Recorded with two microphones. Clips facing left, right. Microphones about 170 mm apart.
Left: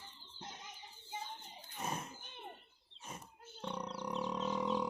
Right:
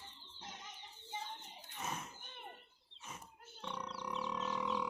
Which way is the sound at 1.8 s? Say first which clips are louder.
Left 3 dB; 35° left (ahead or behind).